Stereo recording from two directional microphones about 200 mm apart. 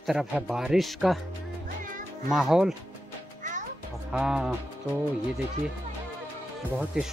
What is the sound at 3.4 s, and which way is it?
Music, 40° right (ahead or behind).